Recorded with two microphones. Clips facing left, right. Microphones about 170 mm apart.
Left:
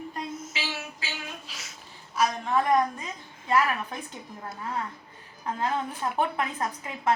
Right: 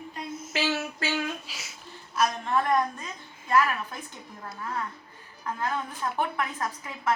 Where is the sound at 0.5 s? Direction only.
60° right (ahead or behind).